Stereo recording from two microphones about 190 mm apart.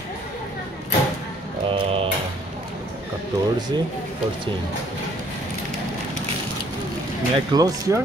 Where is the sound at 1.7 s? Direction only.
30° right (ahead or behind).